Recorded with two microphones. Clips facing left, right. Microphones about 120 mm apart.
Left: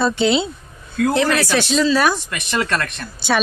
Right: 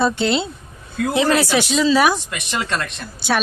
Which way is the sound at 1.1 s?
20° right (ahead or behind).